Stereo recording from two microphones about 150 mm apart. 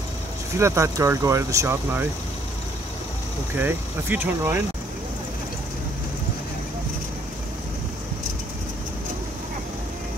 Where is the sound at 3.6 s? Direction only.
15° right (ahead or behind).